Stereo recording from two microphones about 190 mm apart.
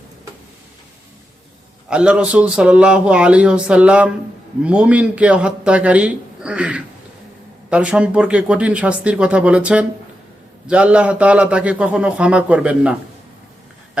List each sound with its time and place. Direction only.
1.9 s a man's voice: 5° right (ahead or behind)